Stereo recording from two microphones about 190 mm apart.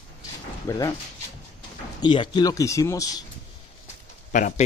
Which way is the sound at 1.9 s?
25° left (ahead or behind).